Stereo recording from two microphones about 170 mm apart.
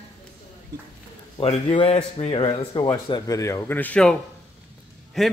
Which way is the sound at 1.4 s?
35° left (ahead or behind).